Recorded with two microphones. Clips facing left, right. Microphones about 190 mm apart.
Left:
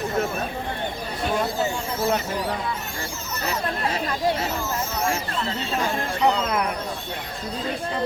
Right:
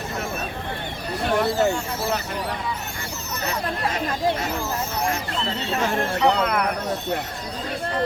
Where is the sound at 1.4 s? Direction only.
70° right (ahead or behind).